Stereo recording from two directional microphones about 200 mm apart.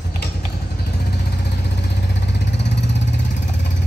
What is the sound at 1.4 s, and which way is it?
Vehicle, 55° left (ahead or behind).